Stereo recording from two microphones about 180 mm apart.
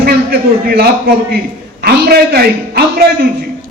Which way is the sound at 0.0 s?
60° right (ahead or behind).